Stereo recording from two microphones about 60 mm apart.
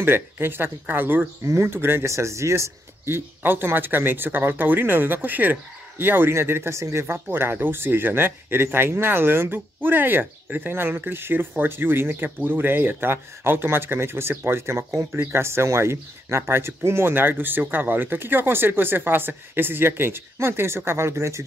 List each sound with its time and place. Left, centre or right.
0.0 s speech: right
1.4 s speech: right
2.0 s speech: right